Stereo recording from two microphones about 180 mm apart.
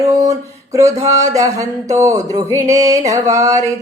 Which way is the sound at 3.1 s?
20° right (ahead or behind).